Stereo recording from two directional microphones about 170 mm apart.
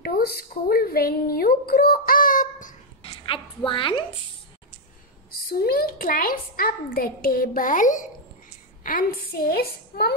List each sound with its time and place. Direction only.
0.0 s speech: 65° left (ahead or behind)
3.0 s a woman's voice: 30° left (ahead or behind)
5.3 s a woman's voice: 60° left (ahead or behind)